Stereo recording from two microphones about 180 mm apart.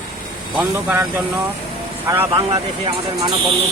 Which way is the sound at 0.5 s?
5° right (ahead or behind).